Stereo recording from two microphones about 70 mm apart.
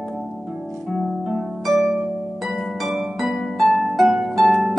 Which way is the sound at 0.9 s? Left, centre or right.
Centre.